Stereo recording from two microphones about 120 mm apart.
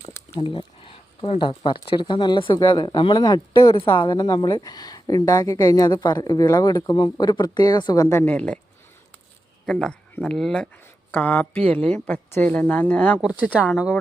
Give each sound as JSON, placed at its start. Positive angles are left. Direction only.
{"t": 0.1, "sound": "a sound", "side_deg": 20}
{"t": 0.5, "sound": "a woman's voice", "side_deg": 45}
{"t": 8.1, "sound": "a woman's voice", "side_deg": 15}
{"t": 9.6, "sound": "a woman's voice", "side_deg": 5}